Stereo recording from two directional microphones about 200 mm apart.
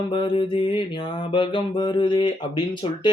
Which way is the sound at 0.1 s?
25° left (ahead or behind).